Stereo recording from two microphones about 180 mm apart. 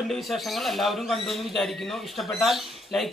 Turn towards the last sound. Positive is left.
turn(degrees=0)  # may be behind; listen again after turning